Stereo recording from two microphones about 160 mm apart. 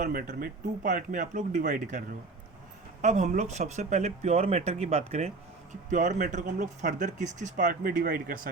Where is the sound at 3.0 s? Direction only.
45° right (ahead or behind).